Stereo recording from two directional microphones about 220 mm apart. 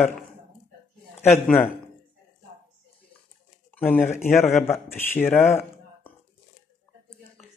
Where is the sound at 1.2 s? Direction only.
5° left (ahead or behind).